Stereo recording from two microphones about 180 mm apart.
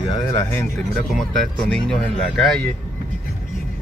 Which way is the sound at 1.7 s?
5° left (ahead or behind).